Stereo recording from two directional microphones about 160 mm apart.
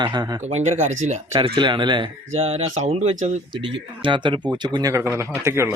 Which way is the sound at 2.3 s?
40° right (ahead or behind).